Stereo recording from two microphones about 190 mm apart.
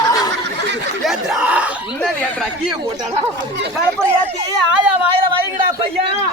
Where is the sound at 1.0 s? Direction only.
5° right (ahead or behind).